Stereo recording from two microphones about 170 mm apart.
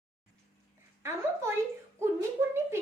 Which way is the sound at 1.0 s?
15° right (ahead or behind).